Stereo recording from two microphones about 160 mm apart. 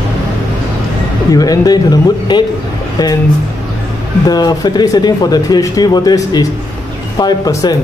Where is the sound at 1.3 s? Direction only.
25° left (ahead or behind).